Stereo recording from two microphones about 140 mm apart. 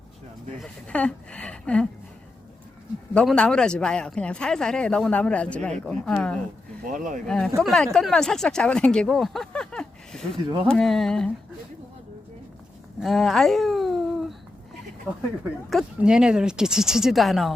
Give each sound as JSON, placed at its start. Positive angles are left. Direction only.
{"t": 0.6, "sound": "speech", "side_deg": 10}
{"t": 3.2, "sound": "speech", "side_deg": 5}
{"t": 6.8, "sound": "speech", "side_deg": -70}
{"t": 7.3, "sound": "speech", "side_deg": 5}
{"t": 13.0, "sound": "babbling", "side_deg": 0}
{"t": 15.1, "sound": "speech", "side_deg": -5}